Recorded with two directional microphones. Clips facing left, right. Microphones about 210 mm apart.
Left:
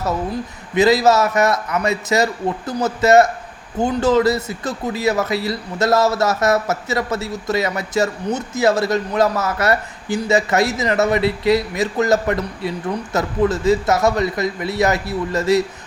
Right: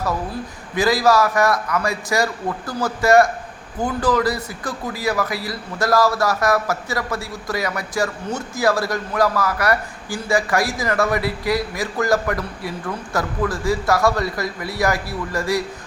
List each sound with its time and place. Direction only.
0.8 s speech: 25° left (ahead or behind)